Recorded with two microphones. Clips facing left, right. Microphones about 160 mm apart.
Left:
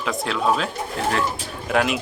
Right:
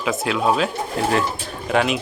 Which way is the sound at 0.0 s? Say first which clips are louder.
Right 2 dB; 5° right (ahead or behind).